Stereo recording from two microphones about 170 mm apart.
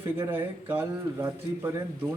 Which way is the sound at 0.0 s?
15° right (ahead or behind).